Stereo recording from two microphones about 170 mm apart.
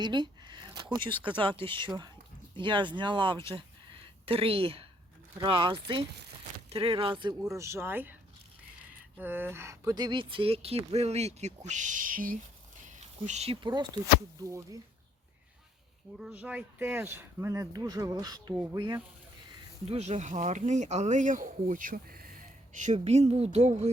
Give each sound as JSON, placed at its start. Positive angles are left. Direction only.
{"t": 0.0, "sound": "a sound", "side_deg": -25}
{"t": 1.6, "sound": "speech", "side_deg": -30}
{"t": 7.5, "sound": "speech", "side_deg": -15}
{"t": 9.1, "sound": "speech", "side_deg": -10}
{"t": 13.2, "sound": "speech", "side_deg": -40}
{"t": 16.2, "sound": "speech", "side_deg": -10}
{"t": 19.9, "sound": "speech", "side_deg": -40}